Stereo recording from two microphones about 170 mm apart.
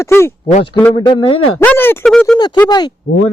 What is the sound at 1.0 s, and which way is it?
Speech, 30° left (ahead or behind).